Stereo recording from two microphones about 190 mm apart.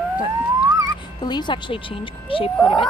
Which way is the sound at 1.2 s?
25° left (ahead or behind).